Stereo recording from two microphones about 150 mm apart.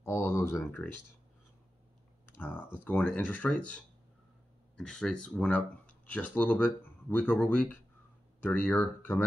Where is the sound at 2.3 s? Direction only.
15° left (ahead or behind).